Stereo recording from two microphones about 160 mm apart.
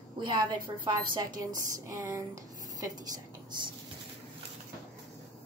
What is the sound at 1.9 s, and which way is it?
Speech, 15° right (ahead or behind).